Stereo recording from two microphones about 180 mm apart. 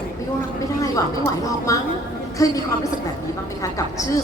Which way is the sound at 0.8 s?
20° left (ahead or behind).